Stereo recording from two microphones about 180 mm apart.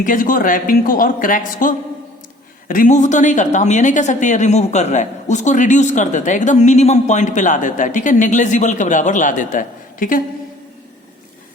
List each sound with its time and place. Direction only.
0.0 s a woman's voice: 50° left (ahead or behind)